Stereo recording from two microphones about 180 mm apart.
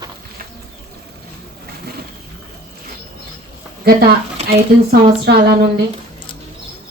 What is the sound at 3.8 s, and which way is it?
Speech, 60° right (ahead or behind).